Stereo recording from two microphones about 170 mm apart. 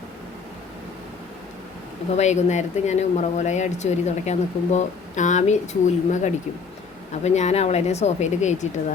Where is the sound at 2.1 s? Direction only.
45° left (ahead or behind).